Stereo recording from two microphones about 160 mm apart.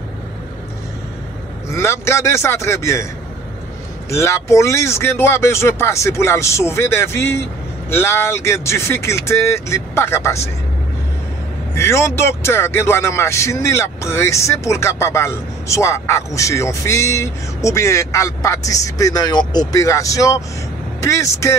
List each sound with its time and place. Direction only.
1.7 s speech: 15° left (ahead or behind)
4.1 s speech: 15° left (ahead or behind)
11.7 s speech: 15° left (ahead or behind)